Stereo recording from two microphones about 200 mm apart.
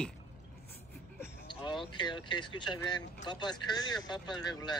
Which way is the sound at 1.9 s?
20° left (ahead or behind).